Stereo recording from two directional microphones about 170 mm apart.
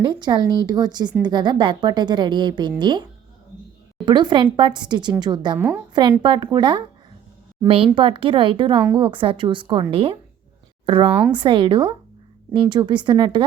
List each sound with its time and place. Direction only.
0.0 s a woman's voice: 25° right (ahead or behind)
4.0 s a woman's voice: 25° right (ahead or behind)
5.5 s a woman's voice: 10° right (ahead or behind)
5.9 s a woman's voice: 25° right (ahead or behind)
7.9 s a woman's voice: 30° right (ahead or behind)